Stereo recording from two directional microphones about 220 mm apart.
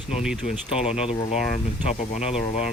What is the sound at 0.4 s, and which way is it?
Speech, 40° left (ahead or behind).